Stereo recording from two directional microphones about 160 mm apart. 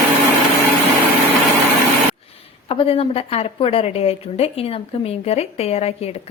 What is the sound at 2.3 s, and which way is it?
A woman's voice, 35° left (ahead or behind).